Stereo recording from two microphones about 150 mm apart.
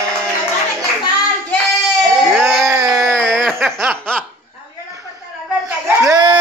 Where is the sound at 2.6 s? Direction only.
20° right (ahead or behind).